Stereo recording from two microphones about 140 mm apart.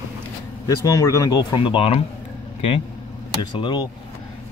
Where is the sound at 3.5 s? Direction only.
35° left (ahead or behind).